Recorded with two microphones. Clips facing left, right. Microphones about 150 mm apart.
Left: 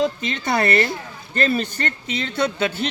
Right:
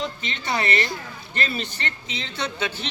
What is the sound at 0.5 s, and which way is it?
Speech, 55° left (ahead or behind).